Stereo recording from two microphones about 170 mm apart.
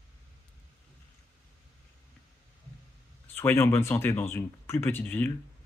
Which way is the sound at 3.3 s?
10° left (ahead or behind).